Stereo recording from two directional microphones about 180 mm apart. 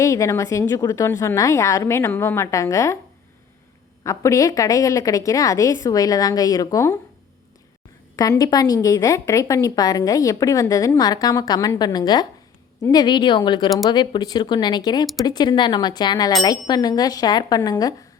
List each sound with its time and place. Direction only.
0.0 s a woman's voice: 15° left (ahead or behind)
4.0 s a woman's voice: 15° left (ahead or behind)
8.1 s a woman's voice: 20° left (ahead or behind)